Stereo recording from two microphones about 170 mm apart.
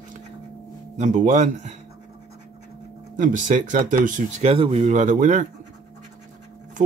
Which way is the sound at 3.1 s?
50° right (ahead or behind).